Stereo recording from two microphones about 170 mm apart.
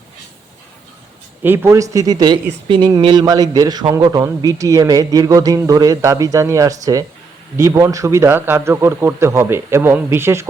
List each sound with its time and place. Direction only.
1.4 s a man's voice: 15° right (ahead or behind)